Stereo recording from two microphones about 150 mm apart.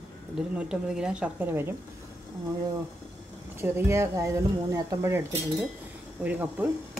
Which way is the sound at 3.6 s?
15° right (ahead or behind).